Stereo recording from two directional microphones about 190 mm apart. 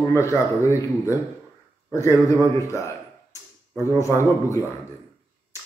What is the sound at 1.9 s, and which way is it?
Speech, 15° left (ahead or behind).